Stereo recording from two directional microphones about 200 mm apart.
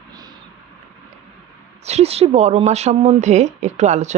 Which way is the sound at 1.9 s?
30° right (ahead or behind).